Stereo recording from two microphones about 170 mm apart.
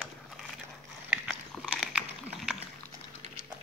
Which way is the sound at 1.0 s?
Centre (ahead or behind).